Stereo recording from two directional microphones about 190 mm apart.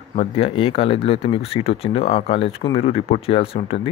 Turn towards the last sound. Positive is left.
turn(degrees=30)  # may be behind; listen again after turning